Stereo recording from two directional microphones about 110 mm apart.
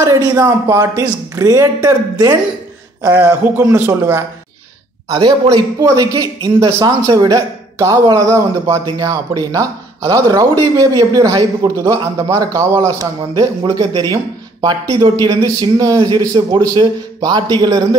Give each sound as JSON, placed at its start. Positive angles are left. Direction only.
{"t": 0.0, "sound": "speech", "side_deg": -30}
{"t": 3.2, "sound": "speech", "side_deg": -25}
{"t": 5.5, "sound": "speech", "side_deg": -30}